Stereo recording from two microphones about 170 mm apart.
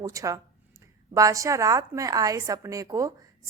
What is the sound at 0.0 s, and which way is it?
A woman's voice, 20° right (ahead or behind).